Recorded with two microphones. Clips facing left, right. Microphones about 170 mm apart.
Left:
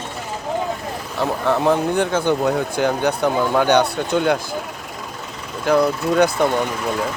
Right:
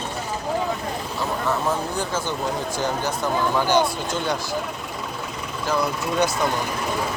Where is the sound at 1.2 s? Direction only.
60° left (ahead or behind).